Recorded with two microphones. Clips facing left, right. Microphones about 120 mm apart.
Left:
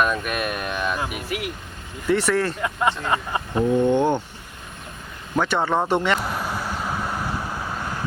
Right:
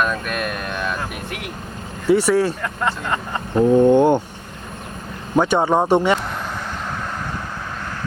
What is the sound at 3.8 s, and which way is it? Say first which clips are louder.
Speech: right 6 dB; 15° right (ahead or behind).